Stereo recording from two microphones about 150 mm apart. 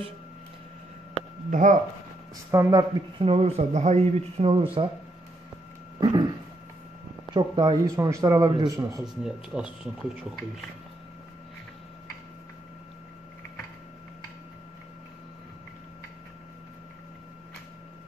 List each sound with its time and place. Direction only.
1.5 s speech: 60° right (ahead or behind)
2.5 s speech: 20° right (ahead or behind)
3.2 s speech: 40° right (ahead or behind)
5.9 s dog: 30° right (ahead or behind)
7.2 s speech: 30° right (ahead or behind)
9.0 s speech: 5° right (ahead or behind)